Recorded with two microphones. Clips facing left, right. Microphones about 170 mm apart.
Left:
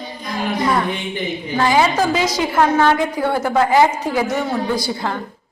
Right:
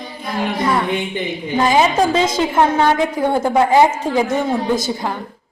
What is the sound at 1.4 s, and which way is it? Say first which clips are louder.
A woman's voice: right 1 dB; 20° right (ahead or behind).